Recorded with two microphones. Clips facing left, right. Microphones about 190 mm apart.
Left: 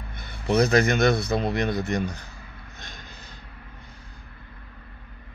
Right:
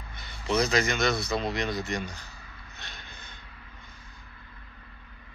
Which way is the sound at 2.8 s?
45° left (ahead or behind).